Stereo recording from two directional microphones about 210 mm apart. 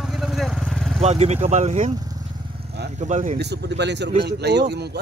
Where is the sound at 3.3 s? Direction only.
50° right (ahead or behind).